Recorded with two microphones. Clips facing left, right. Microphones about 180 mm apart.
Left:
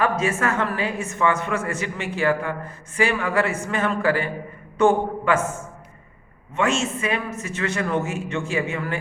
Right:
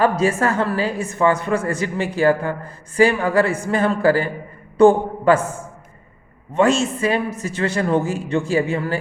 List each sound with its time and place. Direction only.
0.0 s a man's voice: 35° right (ahead or behind)